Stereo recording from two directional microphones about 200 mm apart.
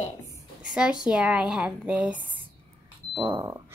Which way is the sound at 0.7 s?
5° right (ahead or behind).